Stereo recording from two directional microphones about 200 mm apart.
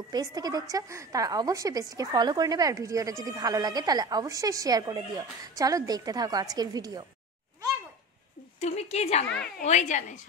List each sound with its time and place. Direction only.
0.1 s a woman's voice: 20° right (ahead or behind)
8.5 s a woman's voice: 30° left (ahead or behind)
9.3 s a woman's voice: 50° left (ahead or behind)
9.7 s a woman's voice: 35° left (ahead or behind)